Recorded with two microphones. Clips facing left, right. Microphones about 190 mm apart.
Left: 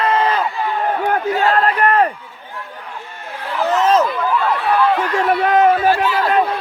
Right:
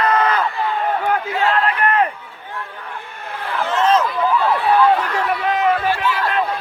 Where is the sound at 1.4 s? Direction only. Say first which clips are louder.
Left 2 dB; 40° left (ahead or behind).